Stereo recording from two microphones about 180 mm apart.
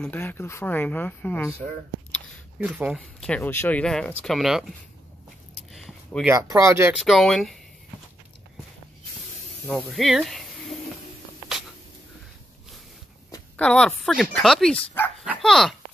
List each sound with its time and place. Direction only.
0.0 s speech: 10° left (ahead or behind)
2.6 s speech: 5° right (ahead or behind)
3.3 s speech: 10° left (ahead or behind)
5.7 s a sound: centre (ahead or behind)
6.3 s speech: 20° right (ahead or behind)
7.0 s speech: centre (ahead or behind)
9.7 s speech: 5° left (ahead or behind)
13.6 s speech: 5° left (ahead or behind)